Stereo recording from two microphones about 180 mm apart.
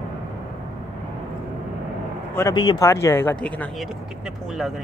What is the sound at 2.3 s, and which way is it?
Speech, 20° left (ahead or behind).